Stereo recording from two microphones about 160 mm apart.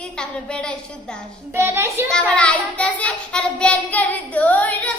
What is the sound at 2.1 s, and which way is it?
Child singing, 5° left (ahead or behind).